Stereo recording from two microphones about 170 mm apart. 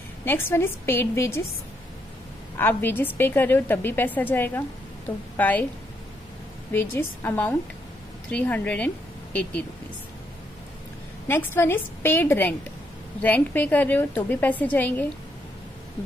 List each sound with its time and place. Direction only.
0.2 s a woman's voice: 10° left (ahead or behind)
2.5 s a woman's voice: 10° left (ahead or behind)
6.7 s a woman's voice: 10° left (ahead or behind)
11.2 s a woman's voice: 15° left (ahead or behind)